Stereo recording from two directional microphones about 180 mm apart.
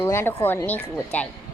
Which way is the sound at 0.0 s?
15° left (ahead or behind).